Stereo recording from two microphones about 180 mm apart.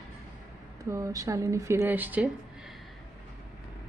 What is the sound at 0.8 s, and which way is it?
Speech, 20° right (ahead or behind).